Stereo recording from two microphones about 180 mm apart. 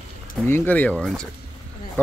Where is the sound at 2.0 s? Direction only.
10° left (ahead or behind).